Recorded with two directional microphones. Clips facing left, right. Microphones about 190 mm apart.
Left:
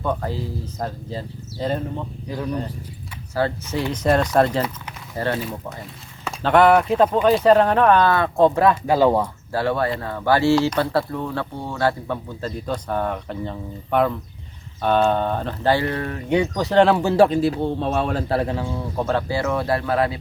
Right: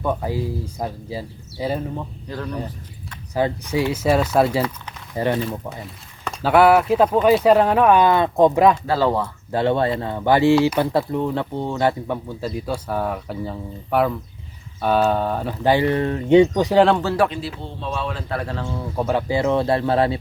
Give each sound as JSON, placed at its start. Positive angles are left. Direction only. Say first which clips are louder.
{"t": 0.0, "sound": "speech", "louder": "right 2 dB", "side_deg": -10}
{"t": 2.2, "sound": "speech", "louder": "left 5 dB", "side_deg": 10}
{"t": 3.3, "sound": "speech", "louder": "right 2 dB", "side_deg": -15}
{"t": 8.7, "sound": "speech", "louder": "left 3 dB", "side_deg": 15}
{"t": 9.5, "sound": "speech", "louder": "right 4 dB", "side_deg": -20}
{"t": 16.7, "sound": "speech", "louder": "even", "side_deg": 0}
{"t": 17.2, "sound": "speech", "louder": "left 6 dB", "side_deg": 40}
{"t": 18.4, "sound": "speech", "louder": "left 3 dB", "side_deg": 10}
{"t": 18.7, "sound": "speech", "louder": "even", "side_deg": 0}
{"t": 19.0, "sound": "speech", "louder": "right 3 dB", "side_deg": -15}